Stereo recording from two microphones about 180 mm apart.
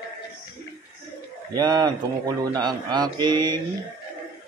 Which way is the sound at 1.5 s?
20° right (ahead or behind).